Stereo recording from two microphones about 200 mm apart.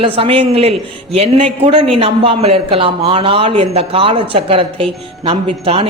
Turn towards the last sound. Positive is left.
turn(degrees=-25)  # may be behind; listen again after turning